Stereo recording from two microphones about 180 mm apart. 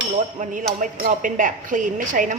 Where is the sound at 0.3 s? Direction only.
45° right (ahead or behind).